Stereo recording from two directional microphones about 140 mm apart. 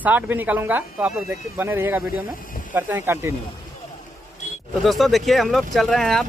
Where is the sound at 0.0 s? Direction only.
15° right (ahead or behind).